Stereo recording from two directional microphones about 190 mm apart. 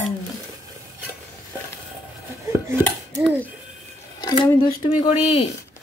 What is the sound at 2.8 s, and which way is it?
Dishes, 10° left (ahead or behind).